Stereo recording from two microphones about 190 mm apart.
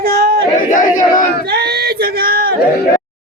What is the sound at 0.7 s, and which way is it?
Speech, 45° left (ahead or behind).